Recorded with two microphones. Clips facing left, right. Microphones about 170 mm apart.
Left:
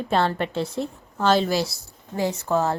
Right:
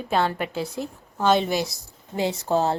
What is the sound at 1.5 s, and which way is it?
Speech, 15° right (ahead or behind).